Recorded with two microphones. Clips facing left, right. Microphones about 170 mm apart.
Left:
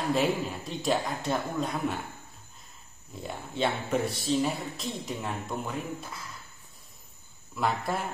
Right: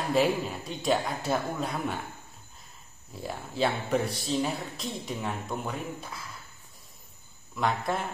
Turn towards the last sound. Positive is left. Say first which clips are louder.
# right 1 dB
turn(degrees=5)  # may be behind; listen again after turning